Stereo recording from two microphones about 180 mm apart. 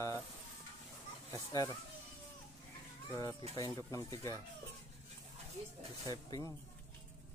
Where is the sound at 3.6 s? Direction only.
20° left (ahead or behind).